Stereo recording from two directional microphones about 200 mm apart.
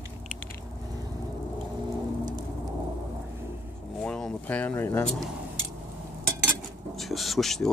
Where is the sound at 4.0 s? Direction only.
5° left (ahead or behind).